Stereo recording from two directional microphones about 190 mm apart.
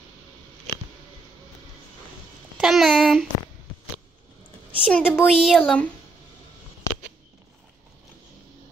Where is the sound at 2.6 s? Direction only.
Centre (ahead or behind).